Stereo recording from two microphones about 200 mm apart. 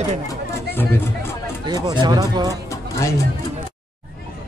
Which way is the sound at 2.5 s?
15° left (ahead or behind).